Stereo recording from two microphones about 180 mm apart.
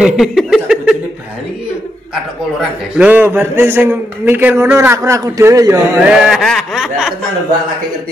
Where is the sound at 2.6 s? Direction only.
10° right (ahead or behind).